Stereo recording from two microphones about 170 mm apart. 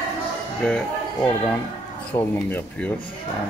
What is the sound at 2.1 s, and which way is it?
Speech, 15° left (ahead or behind).